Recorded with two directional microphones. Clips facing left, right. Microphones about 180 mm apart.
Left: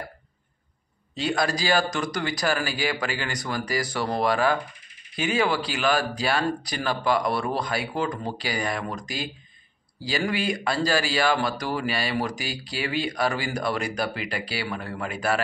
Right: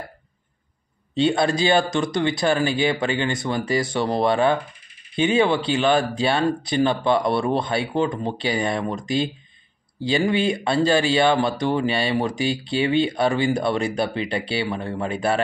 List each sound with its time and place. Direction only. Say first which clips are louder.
1.1 s speech: right 6 dB; 25° right (ahead or behind)